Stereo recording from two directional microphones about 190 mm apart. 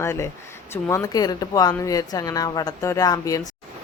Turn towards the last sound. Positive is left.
turn(degrees=20)  # may be behind; listen again after turning